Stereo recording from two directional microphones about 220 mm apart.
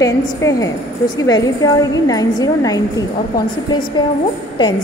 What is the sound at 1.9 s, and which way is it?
A woman's voice, 15° left (ahead or behind).